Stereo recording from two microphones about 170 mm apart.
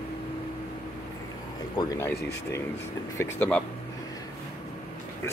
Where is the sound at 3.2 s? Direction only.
10° left (ahead or behind).